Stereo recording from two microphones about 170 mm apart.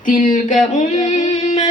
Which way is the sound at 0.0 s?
50° left (ahead or behind).